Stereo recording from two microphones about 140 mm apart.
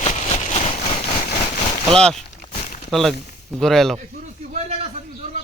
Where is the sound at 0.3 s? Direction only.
45° left (ahead or behind).